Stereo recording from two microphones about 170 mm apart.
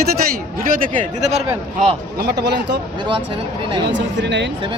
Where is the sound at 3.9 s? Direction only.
90° right.